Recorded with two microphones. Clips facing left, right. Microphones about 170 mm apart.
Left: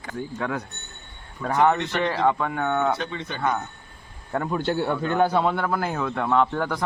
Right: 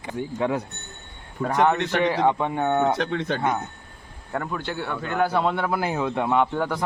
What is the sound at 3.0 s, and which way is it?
Speech, 70° right (ahead or behind).